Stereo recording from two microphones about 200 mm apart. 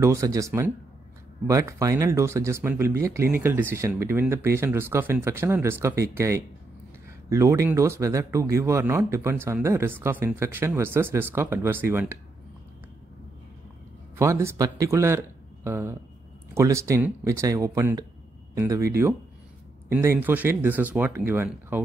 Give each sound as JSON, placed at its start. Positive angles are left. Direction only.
{"t": 0.0, "sound": "speech", "side_deg": -15}
{"t": 14.1, "sound": "speech", "side_deg": -15}